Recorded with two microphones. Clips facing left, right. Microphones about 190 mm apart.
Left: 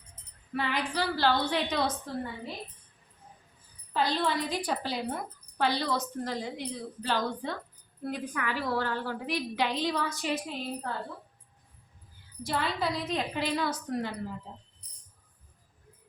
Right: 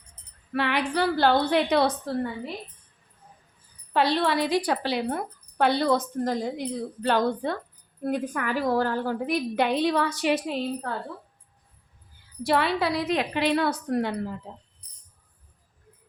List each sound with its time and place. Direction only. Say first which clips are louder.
0.5 s a woman's voice: right 6 dB; 70° right (ahead or behind)
3.9 s a woman's voice: right 5 dB; 70° right (ahead or behind)
12.4 s a woman's voice: right 7 dB; 70° right (ahead or behind)